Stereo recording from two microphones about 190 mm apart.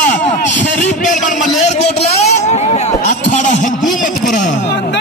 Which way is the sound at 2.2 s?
35° left (ahead or behind).